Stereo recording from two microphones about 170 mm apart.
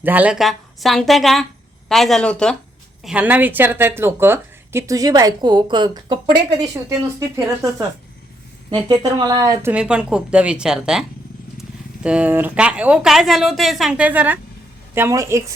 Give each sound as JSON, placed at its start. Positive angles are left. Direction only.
{"t": 0.0, "sound": "a woman's voice", "side_deg": -10}
{"t": 9.7, "sound": "a woman's voice", "side_deg": -5}
{"t": 12.0, "sound": "a woman's voice", "side_deg": -5}